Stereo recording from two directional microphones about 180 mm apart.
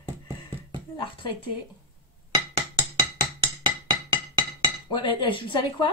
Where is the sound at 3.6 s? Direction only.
25° right (ahead or behind).